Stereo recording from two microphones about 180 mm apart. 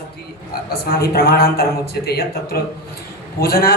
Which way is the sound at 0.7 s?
55° left (ahead or behind).